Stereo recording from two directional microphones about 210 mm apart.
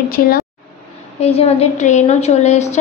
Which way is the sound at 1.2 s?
30° left (ahead or behind).